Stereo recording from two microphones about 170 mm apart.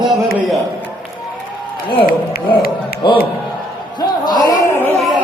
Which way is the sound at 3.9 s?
25° left (ahead or behind).